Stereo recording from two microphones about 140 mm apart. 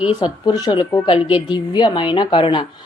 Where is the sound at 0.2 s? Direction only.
30° left (ahead or behind).